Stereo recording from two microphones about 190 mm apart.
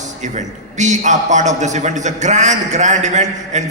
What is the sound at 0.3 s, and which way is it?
A man's voice, 40° right (ahead or behind).